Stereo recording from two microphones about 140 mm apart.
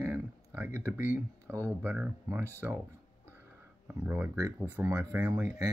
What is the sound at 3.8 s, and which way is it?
Speech, 15° right (ahead or behind).